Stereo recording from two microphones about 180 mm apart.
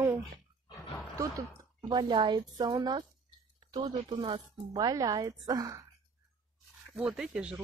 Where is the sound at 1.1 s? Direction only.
20° right (ahead or behind).